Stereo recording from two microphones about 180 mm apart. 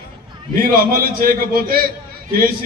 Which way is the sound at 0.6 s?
55° right (ahead or behind).